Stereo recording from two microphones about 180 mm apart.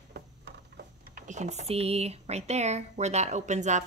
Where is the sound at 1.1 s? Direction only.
40° right (ahead or behind).